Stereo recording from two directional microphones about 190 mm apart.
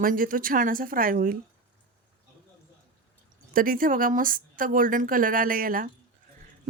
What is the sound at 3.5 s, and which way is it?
A woman's voice, 45° right (ahead or behind).